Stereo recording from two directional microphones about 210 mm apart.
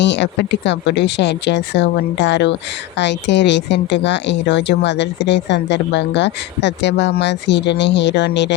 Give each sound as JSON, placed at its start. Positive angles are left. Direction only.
{"t": 0.0, "sound": "a woman's voice", "side_deg": 55}